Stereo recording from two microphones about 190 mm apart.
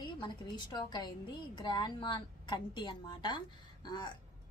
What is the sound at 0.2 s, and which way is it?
A woman's voice, 25° left (ahead or behind).